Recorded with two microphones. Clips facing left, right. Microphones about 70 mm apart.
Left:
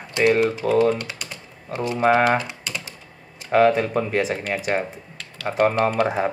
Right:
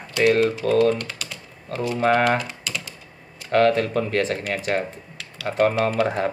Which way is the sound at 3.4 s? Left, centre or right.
Centre.